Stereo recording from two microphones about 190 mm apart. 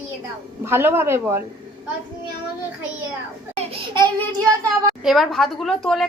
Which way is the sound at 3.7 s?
25° right (ahead or behind).